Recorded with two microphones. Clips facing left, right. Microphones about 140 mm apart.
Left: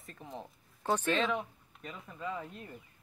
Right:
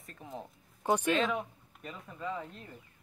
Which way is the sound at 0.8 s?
15° right (ahead or behind).